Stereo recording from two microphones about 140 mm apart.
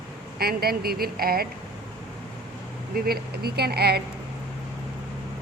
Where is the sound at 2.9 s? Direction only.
90° right.